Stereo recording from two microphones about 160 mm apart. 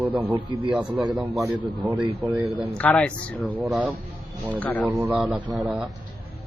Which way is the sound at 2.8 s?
10° left (ahead or behind).